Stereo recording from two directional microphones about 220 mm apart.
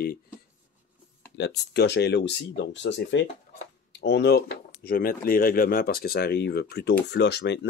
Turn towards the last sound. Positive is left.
turn(degrees=50)  # may be behind; listen again after turning